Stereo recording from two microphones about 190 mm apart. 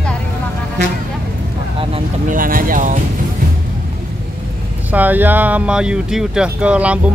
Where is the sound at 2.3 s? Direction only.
45° right (ahead or behind).